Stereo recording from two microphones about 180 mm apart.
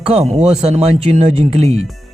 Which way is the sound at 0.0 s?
35° right (ahead or behind).